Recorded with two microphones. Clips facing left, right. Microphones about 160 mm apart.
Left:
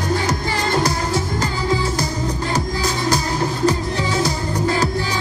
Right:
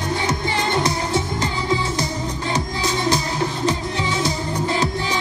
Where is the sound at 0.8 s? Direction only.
25° right (ahead or behind).